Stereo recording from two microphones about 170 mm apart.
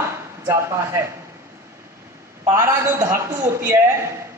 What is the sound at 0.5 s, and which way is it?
Speech, 15° right (ahead or behind).